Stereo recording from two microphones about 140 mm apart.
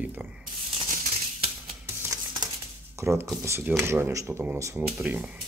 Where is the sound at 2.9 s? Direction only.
20° right (ahead or behind).